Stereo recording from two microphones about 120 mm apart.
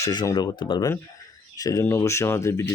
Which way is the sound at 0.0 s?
30° left (ahead or behind).